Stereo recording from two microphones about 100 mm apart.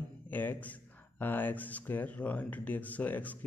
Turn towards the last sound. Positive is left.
turn(degrees=15)  # may be behind; listen again after turning